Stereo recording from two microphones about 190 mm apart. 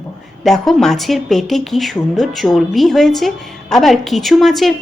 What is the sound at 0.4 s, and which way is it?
A woman's voice, centre (ahead or behind).